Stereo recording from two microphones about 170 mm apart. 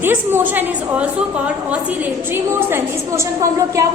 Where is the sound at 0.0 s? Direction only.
10° right (ahead or behind).